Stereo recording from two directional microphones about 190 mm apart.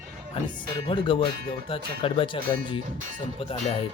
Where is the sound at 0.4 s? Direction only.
25° left (ahead or behind).